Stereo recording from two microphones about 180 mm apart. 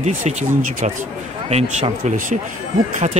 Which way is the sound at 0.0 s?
40° right (ahead or behind).